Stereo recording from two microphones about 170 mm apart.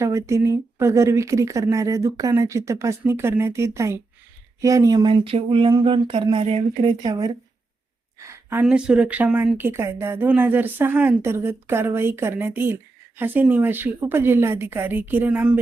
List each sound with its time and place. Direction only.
0.0 s a woman's voice: 15° right (ahead or behind); by 6.9 s 35° right (ahead or behind)
7.0 s speech: 20° right (ahead or behind)
8.2 s a sound: 15° right (ahead or behind)
8.6 s a woman's voice: 5° right (ahead or behind)